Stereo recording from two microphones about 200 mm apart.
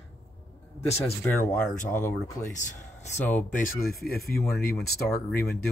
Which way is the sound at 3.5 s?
45° left (ahead or behind).